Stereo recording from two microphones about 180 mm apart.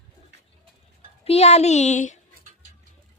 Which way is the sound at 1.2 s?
35° left (ahead or behind).